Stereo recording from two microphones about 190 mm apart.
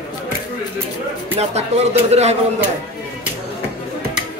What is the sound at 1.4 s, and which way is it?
Speech, 35° right (ahead or behind).